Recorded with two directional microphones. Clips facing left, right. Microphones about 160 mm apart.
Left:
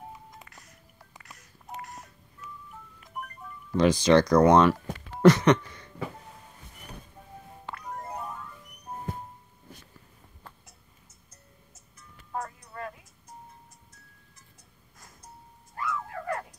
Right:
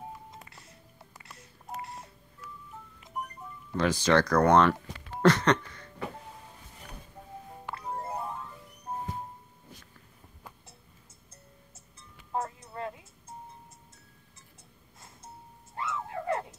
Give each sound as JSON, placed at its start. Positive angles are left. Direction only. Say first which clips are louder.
{"t": 0.5, "sound": "music", "louder": "even", "side_deg": -30}
{"t": 1.8, "sound": "telephone dialing", "louder": "right 1 dB", "side_deg": -30}
{"t": 3.0, "sound": "music", "louder": "right 2 dB", "side_deg": -20}
{"t": 3.7, "sound": "speech", "louder": "left 5 dB", "side_deg": 15}
{"t": 5.2, "sound": "a sound", "louder": "left 4 dB", "side_deg": 10}
{"t": 7.7, "sound": "music", "louder": "right 2 dB", "side_deg": -30}
{"t": 11.7, "sound": "music", "louder": "even", "side_deg": -30}
{"t": 15.0, "sound": "music", "louder": "right 1 dB", "side_deg": -25}